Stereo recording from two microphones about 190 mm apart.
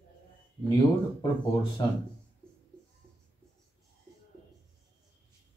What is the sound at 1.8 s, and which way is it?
Speech, 25° left (ahead or behind).